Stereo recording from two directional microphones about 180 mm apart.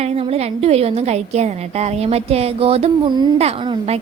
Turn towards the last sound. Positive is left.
turn(degrees=-30)  # may be behind; listen again after turning